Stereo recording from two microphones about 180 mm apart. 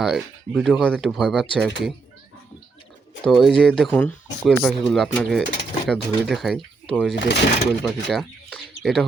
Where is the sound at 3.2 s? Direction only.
Centre (ahead or behind).